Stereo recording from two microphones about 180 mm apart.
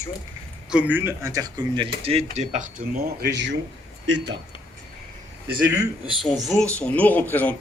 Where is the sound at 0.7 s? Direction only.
10° right (ahead or behind); by 1.9 s 25° right (ahead or behind).